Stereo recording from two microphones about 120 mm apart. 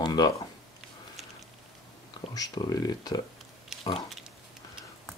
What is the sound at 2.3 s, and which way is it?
Speech, 30° left (ahead or behind).